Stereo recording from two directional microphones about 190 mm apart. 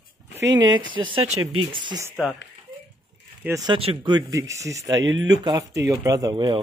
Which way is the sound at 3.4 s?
15° right (ahead or behind).